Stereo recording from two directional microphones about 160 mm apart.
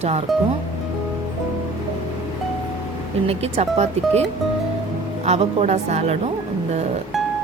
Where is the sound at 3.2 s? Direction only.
40° right (ahead or behind).